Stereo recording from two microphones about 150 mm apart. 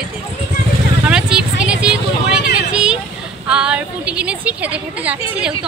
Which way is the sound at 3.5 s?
5° right (ahead or behind).